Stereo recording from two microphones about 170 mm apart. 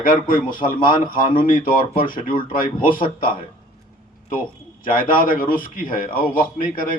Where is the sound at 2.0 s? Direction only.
55° left (ahead or behind).